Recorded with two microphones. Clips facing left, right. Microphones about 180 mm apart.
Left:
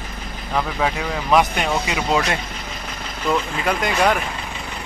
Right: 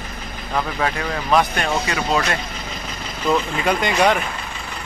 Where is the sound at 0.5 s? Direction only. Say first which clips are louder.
Left 1 dB; 10° left (ahead or behind).